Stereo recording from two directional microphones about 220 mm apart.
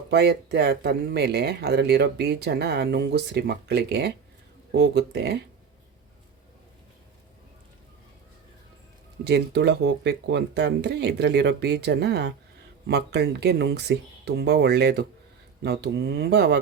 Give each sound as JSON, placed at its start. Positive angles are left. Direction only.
{"t": 0.1, "sound": "speech", "side_deg": -50}
{"t": 9.2, "sound": "speech", "side_deg": -50}